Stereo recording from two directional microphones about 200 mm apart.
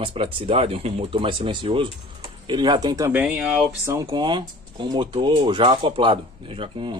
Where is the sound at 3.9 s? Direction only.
20° right (ahead or behind).